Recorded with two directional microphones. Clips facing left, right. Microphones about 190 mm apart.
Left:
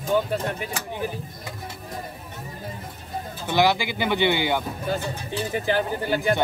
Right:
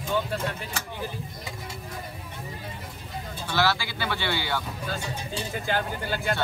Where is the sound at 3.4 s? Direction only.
15° left (ahead or behind).